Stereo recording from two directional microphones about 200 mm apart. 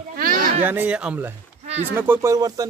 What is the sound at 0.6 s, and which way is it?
Speech, 10° right (ahead or behind).